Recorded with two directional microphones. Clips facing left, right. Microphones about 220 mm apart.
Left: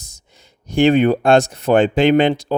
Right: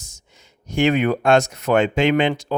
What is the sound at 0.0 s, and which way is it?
Speech, 35° left (ahead or behind).